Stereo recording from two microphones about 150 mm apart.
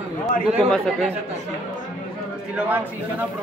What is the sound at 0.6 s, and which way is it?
Speech, 5° left (ahead or behind).